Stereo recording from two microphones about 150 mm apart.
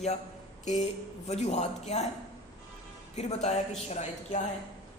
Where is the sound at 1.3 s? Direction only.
45° left (ahead or behind).